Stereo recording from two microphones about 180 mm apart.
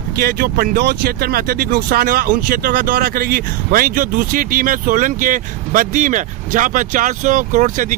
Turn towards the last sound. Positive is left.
turn(degrees=-45)  # may be behind; listen again after turning